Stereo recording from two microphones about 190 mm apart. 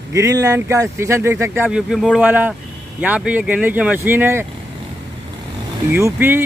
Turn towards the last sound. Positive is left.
turn(degrees=-10)  # may be behind; listen again after turning